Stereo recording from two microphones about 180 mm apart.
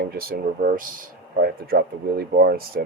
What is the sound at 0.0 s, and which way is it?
Speech, 55° right (ahead or behind).